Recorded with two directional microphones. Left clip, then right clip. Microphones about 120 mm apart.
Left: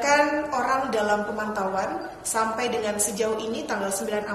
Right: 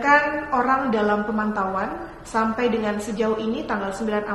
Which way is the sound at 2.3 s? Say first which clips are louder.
Right 3 dB; 35° left (ahead or behind).